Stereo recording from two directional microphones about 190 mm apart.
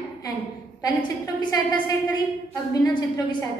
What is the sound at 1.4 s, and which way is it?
A woman's voice, 20° left (ahead or behind).